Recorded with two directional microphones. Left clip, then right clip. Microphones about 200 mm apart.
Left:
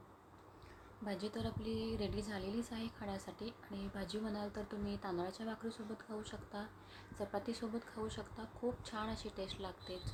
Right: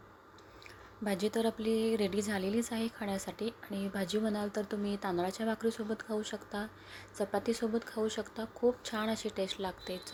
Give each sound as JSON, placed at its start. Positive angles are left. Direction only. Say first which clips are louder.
{"t": 1.0, "sound": "a woman's voice", "louder": "right 11 dB", "side_deg": -35}